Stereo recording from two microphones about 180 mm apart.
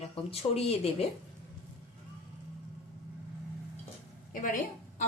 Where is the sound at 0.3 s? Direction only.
30° left (ahead or behind).